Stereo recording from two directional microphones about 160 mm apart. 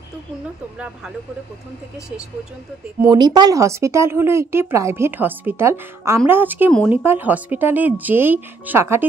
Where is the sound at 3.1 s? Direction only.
25° right (ahead or behind).